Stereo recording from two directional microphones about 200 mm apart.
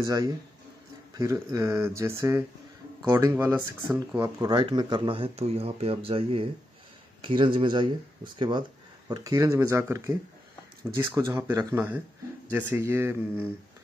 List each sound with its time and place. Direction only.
0.0 s speech: 15° right (ahead or behind)